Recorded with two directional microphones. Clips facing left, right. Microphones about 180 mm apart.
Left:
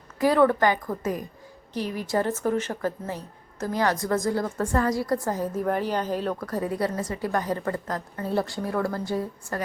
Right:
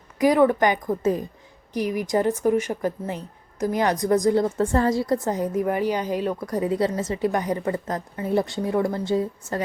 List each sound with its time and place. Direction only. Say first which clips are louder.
0.2 s a woman's voice: right 2 dB; 15° right (ahead or behind)